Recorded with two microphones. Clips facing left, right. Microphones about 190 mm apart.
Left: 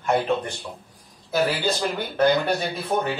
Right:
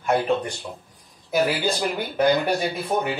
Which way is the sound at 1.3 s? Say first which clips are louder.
Right 1 dB; 15° right (ahead or behind).